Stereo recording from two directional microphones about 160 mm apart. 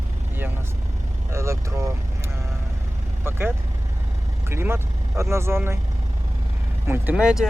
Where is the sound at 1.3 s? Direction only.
15° right (ahead or behind).